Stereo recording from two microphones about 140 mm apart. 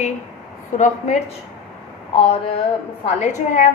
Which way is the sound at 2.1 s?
45° left (ahead or behind).